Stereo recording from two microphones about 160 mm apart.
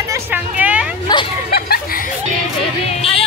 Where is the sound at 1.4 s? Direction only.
75° left (ahead or behind).